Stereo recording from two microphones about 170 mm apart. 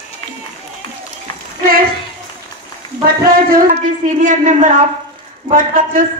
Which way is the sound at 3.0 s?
55° right (ahead or behind).